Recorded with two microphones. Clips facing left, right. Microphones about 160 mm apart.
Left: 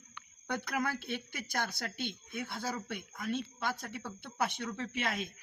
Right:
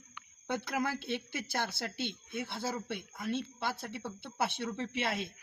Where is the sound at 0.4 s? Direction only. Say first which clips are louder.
Right 1 dB; 25° right (ahead or behind).